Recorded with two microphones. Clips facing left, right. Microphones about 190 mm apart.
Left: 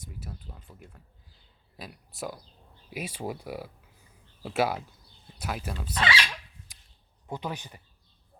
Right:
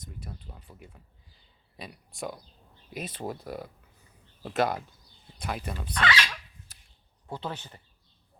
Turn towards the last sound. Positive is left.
turn(degrees=15)  # may be behind; listen again after turning